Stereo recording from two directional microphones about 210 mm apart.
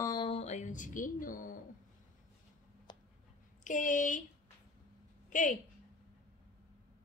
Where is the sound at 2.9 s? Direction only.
20° left (ahead or behind).